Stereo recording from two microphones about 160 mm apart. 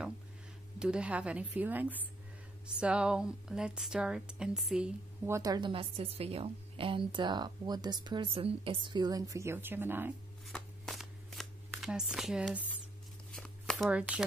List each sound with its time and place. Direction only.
0.7 s a woman's voice: 5° right (ahead or behind)
5.3 s a woman's voice: 25° right (ahead or behind)
10.4 s shuffling cards: centre (ahead or behind)
13.8 s a woman's voice: 10° right (ahead or behind)